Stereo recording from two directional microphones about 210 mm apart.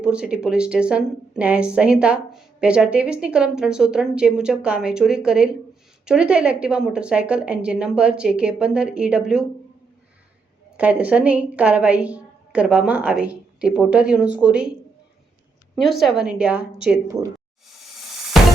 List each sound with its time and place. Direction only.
0.0 s a woman's voice: 5° right (ahead or behind)
10.8 s a woman's voice: 5° right (ahead or behind)
15.7 s a woman's voice: centre (ahead or behind)
18.3 s music: centre (ahead or behind)